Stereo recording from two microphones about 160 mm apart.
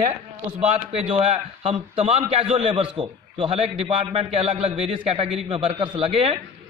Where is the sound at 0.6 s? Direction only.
40° right (ahead or behind).